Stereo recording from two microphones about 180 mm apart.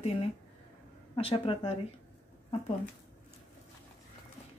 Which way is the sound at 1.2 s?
30° left (ahead or behind).